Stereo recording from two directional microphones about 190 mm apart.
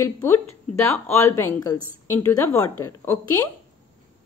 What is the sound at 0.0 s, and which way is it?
A woman's voice, 10° left (ahead or behind).